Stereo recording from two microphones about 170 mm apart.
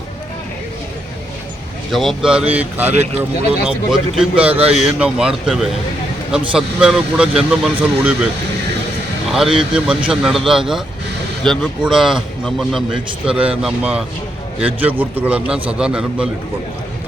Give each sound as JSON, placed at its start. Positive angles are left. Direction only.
{"t": 1.9, "sound": "a man's voice", "side_deg": 0}
{"t": 2.9, "sound": "speech", "side_deg": -40}
{"t": 3.7, "sound": "a man's voice", "side_deg": -5}
{"t": 9.3, "sound": "a man's voice", "side_deg": -5}